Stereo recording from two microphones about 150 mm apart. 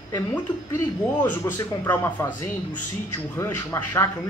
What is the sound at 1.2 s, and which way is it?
Speech, 15° left (ahead or behind).